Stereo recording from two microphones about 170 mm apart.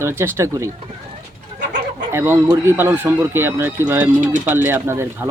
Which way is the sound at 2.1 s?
15° right (ahead or behind).